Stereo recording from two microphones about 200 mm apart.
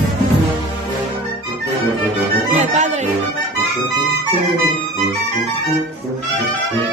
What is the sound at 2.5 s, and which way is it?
Music, 35° right (ahead or behind).